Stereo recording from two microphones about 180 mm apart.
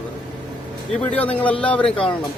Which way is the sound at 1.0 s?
10° left (ahead or behind).